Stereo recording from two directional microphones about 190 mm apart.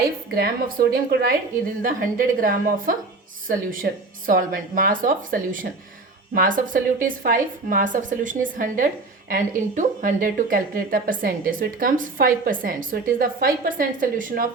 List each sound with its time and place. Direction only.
0.3 s speech: 50° right (ahead or behind)